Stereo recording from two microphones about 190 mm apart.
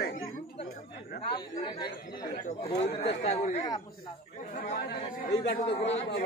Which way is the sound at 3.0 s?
35° left (ahead or behind).